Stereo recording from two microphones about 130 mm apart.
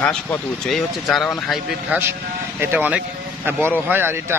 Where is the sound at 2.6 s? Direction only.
15° right (ahead or behind).